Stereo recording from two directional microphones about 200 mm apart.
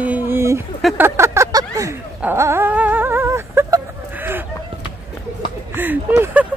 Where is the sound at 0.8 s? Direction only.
10° right (ahead or behind).